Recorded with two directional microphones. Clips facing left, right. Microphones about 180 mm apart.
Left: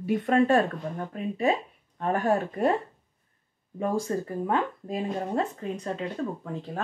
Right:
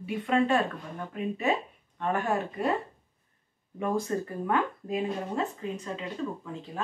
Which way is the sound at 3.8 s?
30° left (ahead or behind).